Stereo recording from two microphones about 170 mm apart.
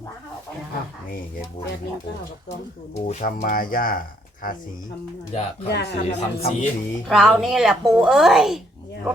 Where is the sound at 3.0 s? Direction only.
45° left (ahead or behind).